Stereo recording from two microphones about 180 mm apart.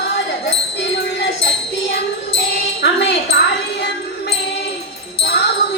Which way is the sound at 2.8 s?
70° left (ahead or behind).